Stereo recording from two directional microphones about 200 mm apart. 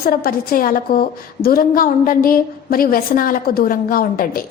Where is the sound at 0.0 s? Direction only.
50° left (ahead or behind).